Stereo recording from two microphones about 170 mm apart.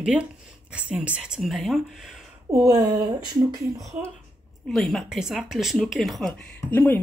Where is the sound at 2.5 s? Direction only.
20° right (ahead or behind).